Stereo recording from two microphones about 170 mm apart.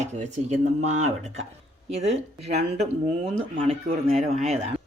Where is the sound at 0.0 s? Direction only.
45° right (ahead or behind).